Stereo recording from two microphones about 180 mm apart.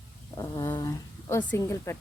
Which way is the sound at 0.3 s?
20° left (ahead or behind).